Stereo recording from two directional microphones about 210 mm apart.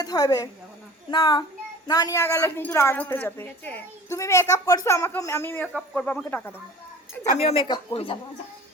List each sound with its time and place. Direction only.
0.0 s a woman's voice: 20° left (ahead or behind)
7.3 s speech: 25° left (ahead or behind)